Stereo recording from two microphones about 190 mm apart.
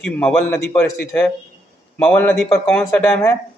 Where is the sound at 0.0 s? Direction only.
5° left (ahead or behind).